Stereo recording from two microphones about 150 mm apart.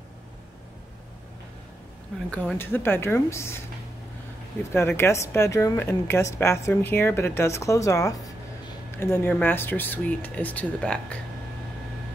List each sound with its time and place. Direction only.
2.3 s speech: 10° left (ahead or behind)
4.7 s speech: 15° left (ahead or behind)